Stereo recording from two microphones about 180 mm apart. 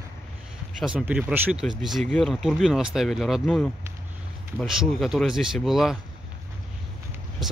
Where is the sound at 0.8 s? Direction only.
5° right (ahead or behind).